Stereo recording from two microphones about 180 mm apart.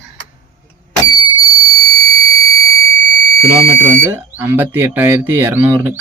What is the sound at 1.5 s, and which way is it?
Fire alarm, 20° left (ahead or behind).